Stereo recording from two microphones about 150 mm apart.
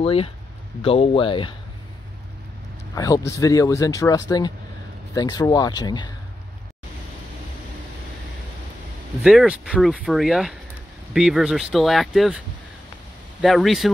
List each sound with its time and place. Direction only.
0.0 s speech: 40° left (ahead or behind)
2.9 s speech: 25° left (ahead or behind)
9.2 s speech: 5° right (ahead or behind)
13.4 s speech: centre (ahead or behind)